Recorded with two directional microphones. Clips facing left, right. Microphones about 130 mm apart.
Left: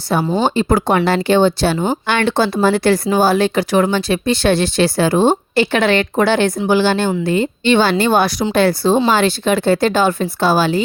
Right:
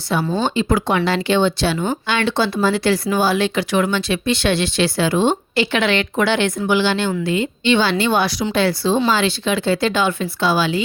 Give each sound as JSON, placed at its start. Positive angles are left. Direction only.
{"t": 0.3, "sound": "speech", "side_deg": 40}